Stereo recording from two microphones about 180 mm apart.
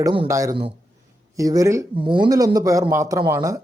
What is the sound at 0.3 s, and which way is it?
Speech, 20° right (ahead or behind).